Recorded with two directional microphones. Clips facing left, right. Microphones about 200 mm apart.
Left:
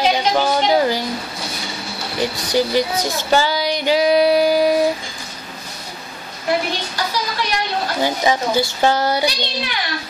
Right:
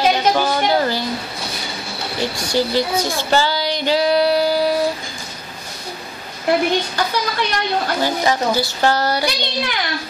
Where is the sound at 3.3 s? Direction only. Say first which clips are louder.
Left 2 dB; 15° left (ahead or behind).